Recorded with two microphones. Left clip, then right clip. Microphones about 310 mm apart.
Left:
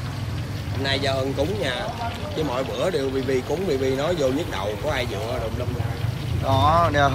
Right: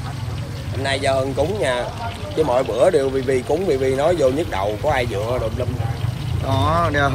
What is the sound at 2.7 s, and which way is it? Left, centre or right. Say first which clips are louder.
Speech: right 8 dB; centre.